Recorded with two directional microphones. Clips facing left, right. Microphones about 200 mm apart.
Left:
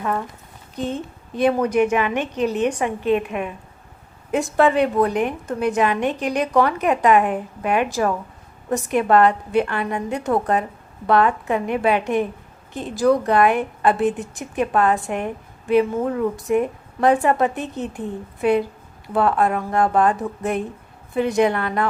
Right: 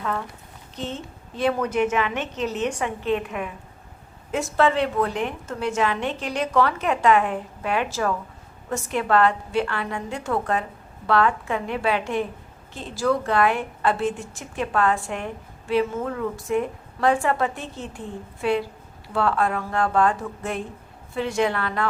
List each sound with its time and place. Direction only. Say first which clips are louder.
0.8 s a woman's voice: left 6 dB; 15° left (ahead or behind)